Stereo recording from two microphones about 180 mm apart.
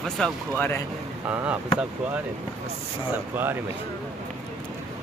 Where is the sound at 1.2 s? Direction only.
10° right (ahead or behind).